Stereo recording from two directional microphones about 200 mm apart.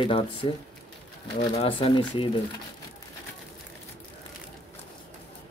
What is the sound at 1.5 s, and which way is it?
Speech, 30° left (ahead or behind).